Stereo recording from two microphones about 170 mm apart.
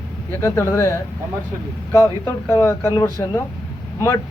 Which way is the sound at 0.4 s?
15° left (ahead or behind).